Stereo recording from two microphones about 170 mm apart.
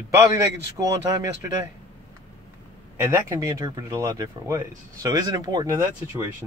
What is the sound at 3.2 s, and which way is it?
Speech, 20° right (ahead or behind).